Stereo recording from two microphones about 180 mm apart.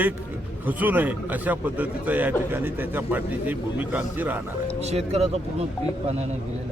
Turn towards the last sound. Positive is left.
turn(degrees=-35)  # may be behind; listen again after turning